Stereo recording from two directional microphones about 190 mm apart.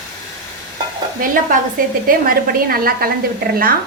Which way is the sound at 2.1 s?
45° right (ahead or behind).